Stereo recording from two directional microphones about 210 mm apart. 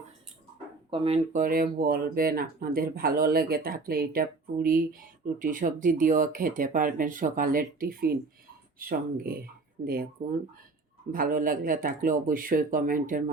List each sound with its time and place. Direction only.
0.9 s speech: 25° right (ahead or behind); by 10.1 s 45° right (ahead or behind)
11.1 s speech: 40° right (ahead or behind)